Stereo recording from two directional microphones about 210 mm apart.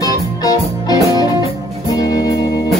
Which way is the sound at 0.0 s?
15° left (ahead or behind).